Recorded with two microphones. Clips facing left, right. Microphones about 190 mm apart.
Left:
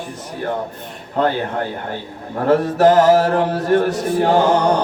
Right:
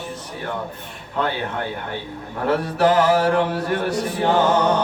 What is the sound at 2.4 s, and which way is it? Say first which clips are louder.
Mantra: left 5 dB; 45° left (ahead or behind).